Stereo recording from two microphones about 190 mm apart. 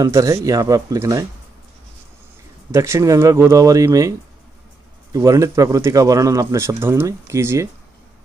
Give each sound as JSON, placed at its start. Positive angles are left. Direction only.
{"t": 0.0, "sound": "speech", "side_deg": -15}
{"t": 2.7, "sound": "speech", "side_deg": -15}
{"t": 5.1, "sound": "speech", "side_deg": -15}